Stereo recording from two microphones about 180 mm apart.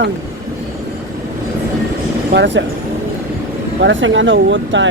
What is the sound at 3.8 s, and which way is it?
Speech, 90° right.